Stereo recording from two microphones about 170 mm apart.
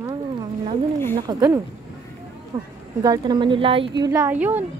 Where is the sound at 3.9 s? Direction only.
20° right (ahead or behind).